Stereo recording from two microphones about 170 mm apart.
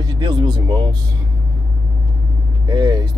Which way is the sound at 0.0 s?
25° right (ahead or behind).